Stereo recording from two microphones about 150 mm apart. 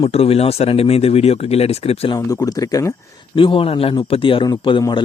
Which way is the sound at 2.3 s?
25° left (ahead or behind).